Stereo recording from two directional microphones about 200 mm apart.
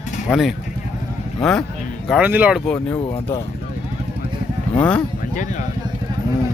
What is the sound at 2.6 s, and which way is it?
Speech, 10° left (ahead or behind).